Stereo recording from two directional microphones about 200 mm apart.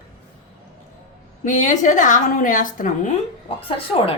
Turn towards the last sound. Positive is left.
turn(degrees=25)  # may be behind; listen again after turning